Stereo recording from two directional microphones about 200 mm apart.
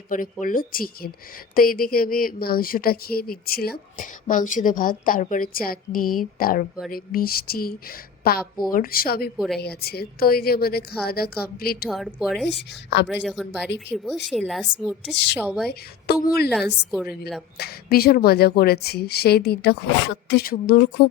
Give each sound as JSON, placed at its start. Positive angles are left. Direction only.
{"t": 0.1, "sound": "a woman's voice", "side_deg": 40}
{"t": 11.9, "sound": "a woman's voice", "side_deg": 0}
{"t": 12.5, "sound": "a woman's voice", "side_deg": 60}
{"t": 13.2, "sound": "a woman's voice", "side_deg": 0}
{"t": 15.1, "sound": "a woman's voice", "side_deg": 60}
{"t": 15.4, "sound": "a woman's voice", "side_deg": 5}
{"t": 15.7, "sound": "a woman's voice", "side_deg": 50}
{"t": 16.5, "sound": "a woman's voice", "side_deg": 0}
{"t": 17.6, "sound": "a woman's voice", "side_deg": 50}